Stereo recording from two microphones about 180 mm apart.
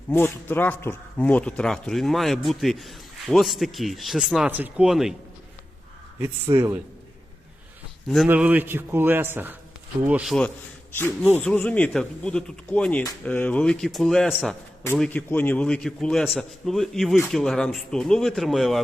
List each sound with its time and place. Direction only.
0.1 s speech: 10° left (ahead or behind)
6.5 s a man's voice: 25° right (ahead or behind)
8.0 s a man's voice: centre (ahead or behind)
10.9 s a man's voice: 10° left (ahead or behind)